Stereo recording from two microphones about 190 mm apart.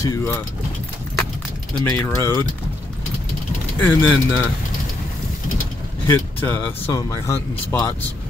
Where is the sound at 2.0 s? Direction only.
15° left (ahead or behind).